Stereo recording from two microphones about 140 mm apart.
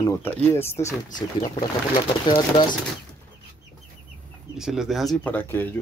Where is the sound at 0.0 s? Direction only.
20° left (ahead or behind).